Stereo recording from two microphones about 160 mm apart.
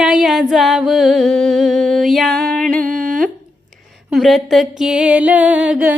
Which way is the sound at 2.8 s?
60° right (ahead or behind).